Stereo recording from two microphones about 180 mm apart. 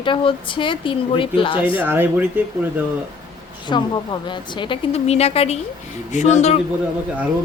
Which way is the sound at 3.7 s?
25° left (ahead or behind).